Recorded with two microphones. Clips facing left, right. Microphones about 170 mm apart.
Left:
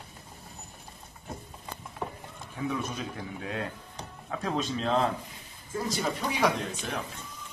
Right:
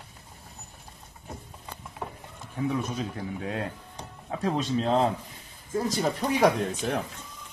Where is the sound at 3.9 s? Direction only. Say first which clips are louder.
Right 2 dB; 25° right (ahead or behind).